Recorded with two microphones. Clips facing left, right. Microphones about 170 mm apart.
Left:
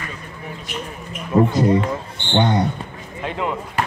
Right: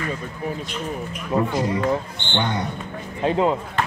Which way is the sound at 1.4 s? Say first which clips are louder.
Left 6 dB; 35° left (ahead or behind).